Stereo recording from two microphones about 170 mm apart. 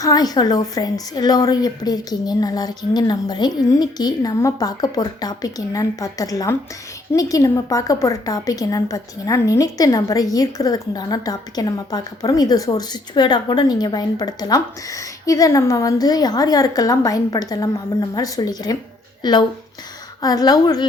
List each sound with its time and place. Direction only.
0.0 s a woman's voice: 20° left (ahead or behind)